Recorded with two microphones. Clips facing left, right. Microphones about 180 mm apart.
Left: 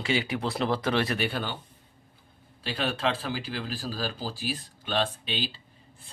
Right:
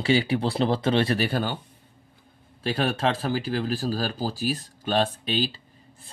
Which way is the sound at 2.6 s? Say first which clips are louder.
Right 4 dB; 45° right (ahead or behind).